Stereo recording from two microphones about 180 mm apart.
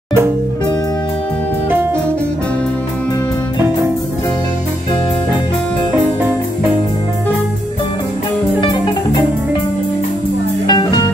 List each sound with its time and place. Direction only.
10.7 s music: 25° left (ahead or behind)